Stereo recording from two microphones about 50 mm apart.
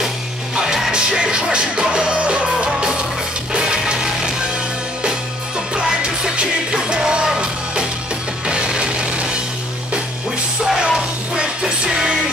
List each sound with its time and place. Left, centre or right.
0.6 s music: centre
5.8 s music: centre
10.6 s music: centre